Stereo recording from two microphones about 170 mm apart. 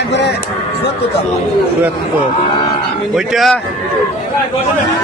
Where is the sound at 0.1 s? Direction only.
85° left.